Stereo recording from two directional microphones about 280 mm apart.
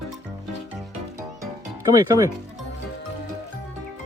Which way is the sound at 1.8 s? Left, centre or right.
Centre.